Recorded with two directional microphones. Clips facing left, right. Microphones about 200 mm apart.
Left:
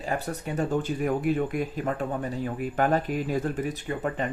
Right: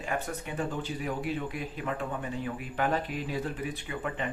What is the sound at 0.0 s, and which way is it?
Speech, 35° left (ahead or behind).